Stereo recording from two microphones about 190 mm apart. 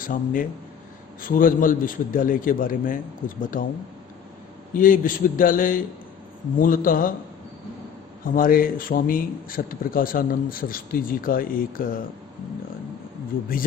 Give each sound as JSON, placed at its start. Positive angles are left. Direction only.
{"t": 0.0, "sound": "speech", "side_deg": 45}
{"t": 4.7, "sound": "speech", "side_deg": 45}
{"t": 8.2, "sound": "speech", "side_deg": 50}